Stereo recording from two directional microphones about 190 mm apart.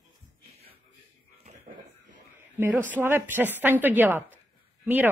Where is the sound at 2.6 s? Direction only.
10° right (ahead or behind).